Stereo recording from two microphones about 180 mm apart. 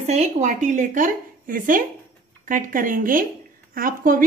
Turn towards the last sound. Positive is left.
turn(degrees=-50)  # may be behind; listen again after turning